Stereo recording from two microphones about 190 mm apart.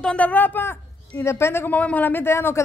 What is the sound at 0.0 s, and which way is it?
A woman's voice, 5° left (ahead or behind).